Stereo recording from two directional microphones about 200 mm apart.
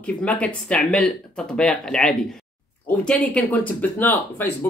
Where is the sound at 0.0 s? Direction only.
5° left (ahead or behind).